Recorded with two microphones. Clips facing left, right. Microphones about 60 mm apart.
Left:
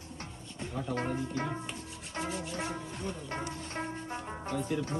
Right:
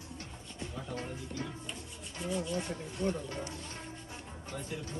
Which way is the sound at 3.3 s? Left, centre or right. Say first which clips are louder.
Left 4 dB; left.